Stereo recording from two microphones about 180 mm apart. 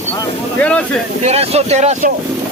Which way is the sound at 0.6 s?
5° left (ahead or behind).